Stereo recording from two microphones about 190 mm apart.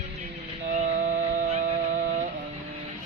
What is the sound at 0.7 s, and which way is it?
Music, 40° right (ahead or behind).